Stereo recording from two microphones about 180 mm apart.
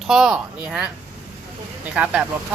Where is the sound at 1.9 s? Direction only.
5° right (ahead or behind).